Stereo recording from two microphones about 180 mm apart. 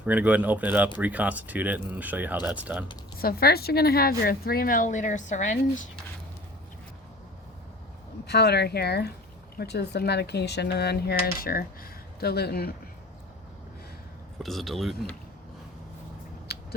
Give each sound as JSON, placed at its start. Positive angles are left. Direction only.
{"t": 0.0, "sound": "speech", "side_deg": -10}
{"t": 3.2, "sound": "speech", "side_deg": 55}
{"t": 8.3, "sound": "speech", "side_deg": 65}
{"t": 14.3, "sound": "speech", "side_deg": 0}
{"t": 16.5, "sound": "biting", "side_deg": 60}